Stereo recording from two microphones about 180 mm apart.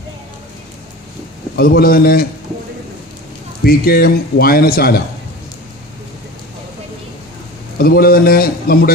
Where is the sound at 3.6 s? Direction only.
55° left (ahead or behind).